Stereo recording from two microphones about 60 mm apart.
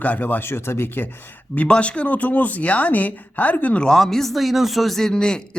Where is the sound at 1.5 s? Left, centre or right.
Centre.